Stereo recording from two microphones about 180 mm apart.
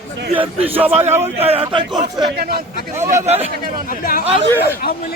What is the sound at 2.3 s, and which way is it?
Speech, 55° right (ahead or behind).